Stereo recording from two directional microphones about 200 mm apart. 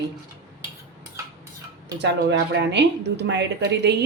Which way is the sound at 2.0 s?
60° right (ahead or behind).